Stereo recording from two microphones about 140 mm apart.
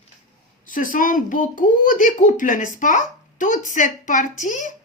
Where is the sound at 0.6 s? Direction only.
75° left (ahead or behind).